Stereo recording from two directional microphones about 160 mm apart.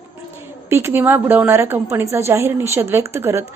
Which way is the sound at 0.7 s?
15° right (ahead or behind).